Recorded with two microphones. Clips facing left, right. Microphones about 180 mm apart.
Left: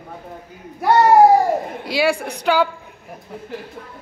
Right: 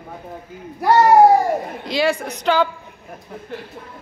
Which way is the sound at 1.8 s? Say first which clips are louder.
Right 1 dB; 5° left (ahead or behind).